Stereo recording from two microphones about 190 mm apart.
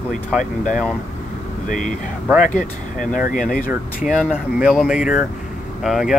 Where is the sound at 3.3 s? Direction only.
45° left (ahead or behind).